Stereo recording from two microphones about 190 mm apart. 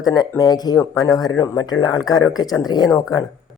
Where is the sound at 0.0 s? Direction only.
20° left (ahead or behind).